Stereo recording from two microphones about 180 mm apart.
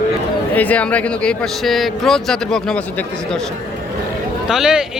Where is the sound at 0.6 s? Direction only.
10° left (ahead or behind).